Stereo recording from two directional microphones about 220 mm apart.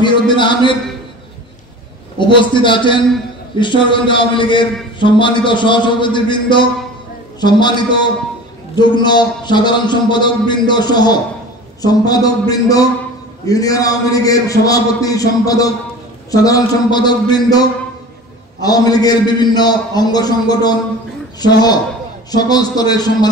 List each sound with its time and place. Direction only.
0.0 s a man's voice: 20° left (ahead or behind)
2.1 s a man's voice: 20° left (ahead or behind)